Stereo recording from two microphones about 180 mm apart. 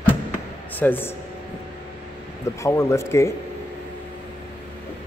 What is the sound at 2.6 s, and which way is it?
Speech, 15° left (ahead or behind).